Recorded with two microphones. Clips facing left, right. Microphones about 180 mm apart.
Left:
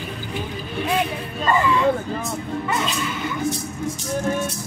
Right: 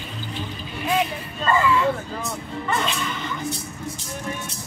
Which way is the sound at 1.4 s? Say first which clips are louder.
Left 1 dB; 20° left (ahead or behind).